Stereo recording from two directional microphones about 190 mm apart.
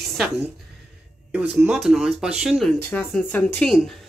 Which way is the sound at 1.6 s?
Centre (ahead or behind).